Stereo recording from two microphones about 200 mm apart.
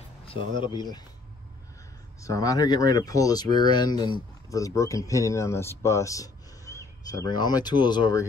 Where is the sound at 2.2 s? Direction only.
15° left (ahead or behind).